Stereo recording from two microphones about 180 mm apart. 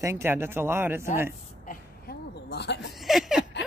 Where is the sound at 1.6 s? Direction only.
60° left (ahead or behind).